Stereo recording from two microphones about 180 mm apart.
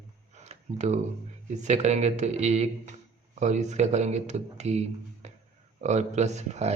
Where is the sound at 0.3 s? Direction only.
40° right (ahead or behind).